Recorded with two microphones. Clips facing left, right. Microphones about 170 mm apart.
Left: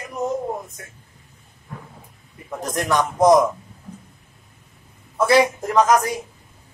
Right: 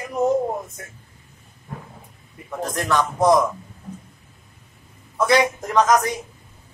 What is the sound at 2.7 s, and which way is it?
Speech, 15° left (ahead or behind).